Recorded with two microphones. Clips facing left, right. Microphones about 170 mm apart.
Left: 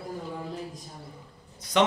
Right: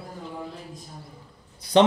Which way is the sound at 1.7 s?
30° right (ahead or behind).